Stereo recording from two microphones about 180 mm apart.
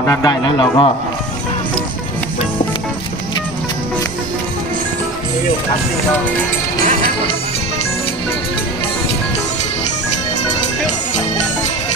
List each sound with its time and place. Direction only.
0.0 s a man's voice: 20° left (ahead or behind)